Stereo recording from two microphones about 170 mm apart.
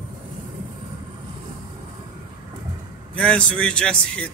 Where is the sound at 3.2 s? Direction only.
5° left (ahead or behind).